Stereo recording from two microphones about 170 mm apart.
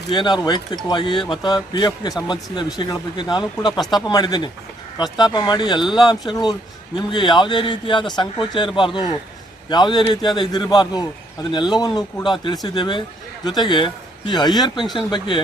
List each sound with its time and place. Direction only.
0.1 s speech: 25° left (ahead or behind)